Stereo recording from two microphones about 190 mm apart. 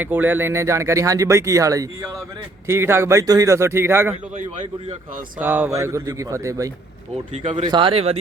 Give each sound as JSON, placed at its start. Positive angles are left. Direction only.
{"t": 0.0, "sound": "speech", "side_deg": -10}
{"t": 5.4, "sound": "speech", "side_deg": -10}